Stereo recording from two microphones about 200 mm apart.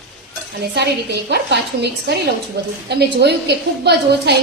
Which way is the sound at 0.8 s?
55° right (ahead or behind).